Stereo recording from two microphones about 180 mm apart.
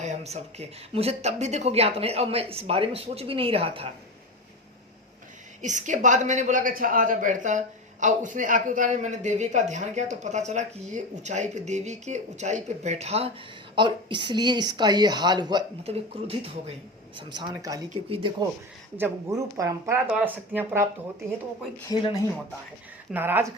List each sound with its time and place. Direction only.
0.0 s speech: 40° right (ahead or behind)
5.6 s a woman's voice: 45° right (ahead or behind); by 15.6 s 25° right (ahead or behind)
15.8 s a woman's voice: 35° right (ahead or behind)
17.9 s speech: 30° right (ahead or behind)
18.9 s speech: 15° right (ahead or behind)
21.8 s speech: 20° left (ahead or behind)
23.1 s speech: 10° right (ahead or behind)